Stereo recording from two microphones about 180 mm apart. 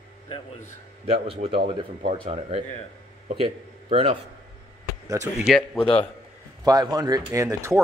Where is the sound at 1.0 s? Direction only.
30° right (ahead or behind).